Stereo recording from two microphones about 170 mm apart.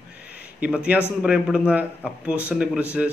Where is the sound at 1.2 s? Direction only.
5° right (ahead or behind).